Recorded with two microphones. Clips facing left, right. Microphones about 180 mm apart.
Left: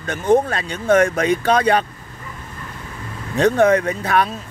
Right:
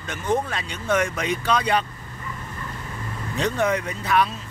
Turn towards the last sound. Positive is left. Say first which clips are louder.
# left 3 dB
turn(degrees=50)  # may be behind; listen again after turning